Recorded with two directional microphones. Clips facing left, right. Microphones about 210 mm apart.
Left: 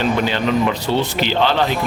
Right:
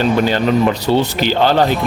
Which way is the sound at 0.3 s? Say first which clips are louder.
Right 4 dB; 45° right (ahead or behind).